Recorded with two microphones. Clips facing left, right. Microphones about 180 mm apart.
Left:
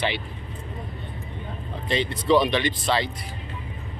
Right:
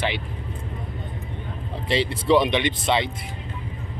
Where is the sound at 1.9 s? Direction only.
25° right (ahead or behind).